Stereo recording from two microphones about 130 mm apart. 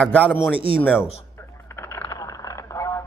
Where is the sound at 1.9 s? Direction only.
20° left (ahead or behind).